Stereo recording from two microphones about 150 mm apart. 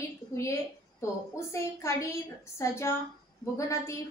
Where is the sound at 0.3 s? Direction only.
20° left (ahead or behind).